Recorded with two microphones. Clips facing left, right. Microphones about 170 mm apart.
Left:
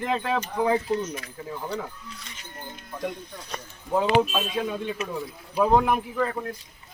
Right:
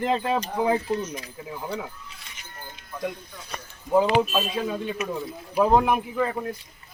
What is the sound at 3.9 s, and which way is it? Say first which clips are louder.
Speech: right 1 dB; 5° right (ahead or behind).